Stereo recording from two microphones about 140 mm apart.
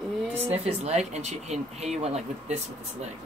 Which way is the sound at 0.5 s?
50° right (ahead or behind).